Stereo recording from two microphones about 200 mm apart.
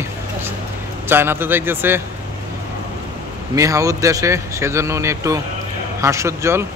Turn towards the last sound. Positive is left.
turn(degrees=-15)  # may be behind; listen again after turning